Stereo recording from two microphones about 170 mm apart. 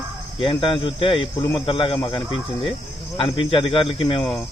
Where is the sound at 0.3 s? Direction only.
30° left (ahead or behind).